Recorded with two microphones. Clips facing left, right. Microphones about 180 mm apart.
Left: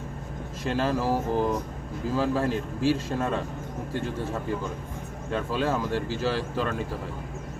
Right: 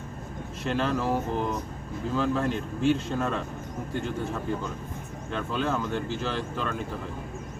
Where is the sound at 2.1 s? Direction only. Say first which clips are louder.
Left 1 dB; 35° left (ahead or behind).